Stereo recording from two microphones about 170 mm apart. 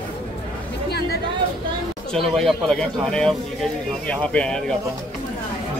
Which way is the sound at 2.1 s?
Centre (ahead or behind).